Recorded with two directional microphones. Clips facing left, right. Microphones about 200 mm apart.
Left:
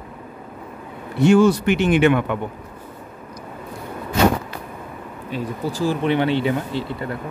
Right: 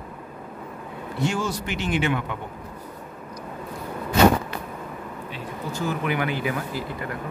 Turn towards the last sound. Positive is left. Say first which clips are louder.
# left 5 dB
turn(degrees=30)  # may be behind; listen again after turning